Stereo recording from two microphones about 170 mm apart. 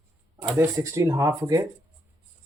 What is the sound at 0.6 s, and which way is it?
Speech, 15° right (ahead or behind).